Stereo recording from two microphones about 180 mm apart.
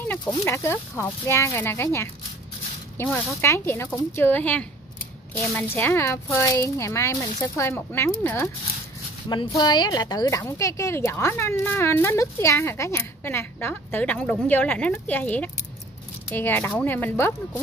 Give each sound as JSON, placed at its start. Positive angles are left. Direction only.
{"t": 0.2, "sound": "a woman's voice", "side_deg": 15}
{"t": 9.6, "sound": "a woman's voice", "side_deg": 25}